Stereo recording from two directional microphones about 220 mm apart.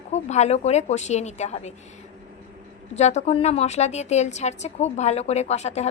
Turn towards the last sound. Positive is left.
turn(degrees=30)  # may be behind; listen again after turning